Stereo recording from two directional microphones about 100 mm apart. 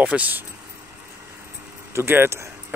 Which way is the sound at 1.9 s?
25° right (ahead or behind).